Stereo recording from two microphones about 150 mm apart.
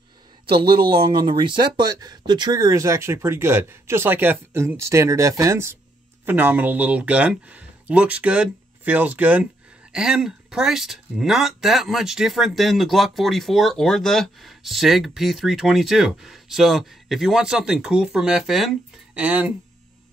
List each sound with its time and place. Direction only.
0.6 s speech: 35° right (ahead or behind); by 19.5 s 10° right (ahead or behind)